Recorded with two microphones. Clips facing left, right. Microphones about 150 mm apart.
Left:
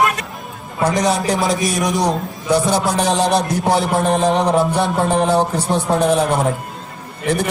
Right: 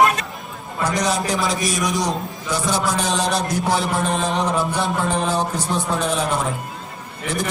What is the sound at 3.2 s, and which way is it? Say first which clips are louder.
Music: left 5 dB; 20° left (ahead or behind).